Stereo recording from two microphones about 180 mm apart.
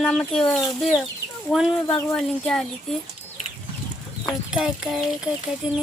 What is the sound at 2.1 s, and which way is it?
Speech, 5° left (ahead or behind).